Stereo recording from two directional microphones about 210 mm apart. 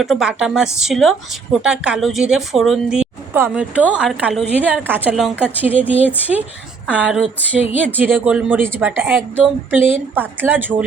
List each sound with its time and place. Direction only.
0.0 s a woman's voice: centre (ahead or behind)